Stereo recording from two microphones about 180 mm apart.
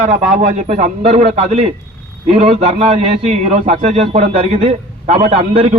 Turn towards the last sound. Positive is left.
turn(degrees=-30)  # may be behind; listen again after turning